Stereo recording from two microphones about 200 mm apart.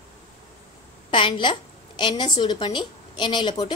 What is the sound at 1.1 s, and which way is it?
A woman's voice, 25° left (ahead or behind).